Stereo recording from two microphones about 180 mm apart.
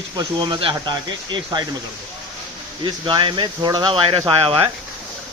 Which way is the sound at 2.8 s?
25° right (ahead or behind).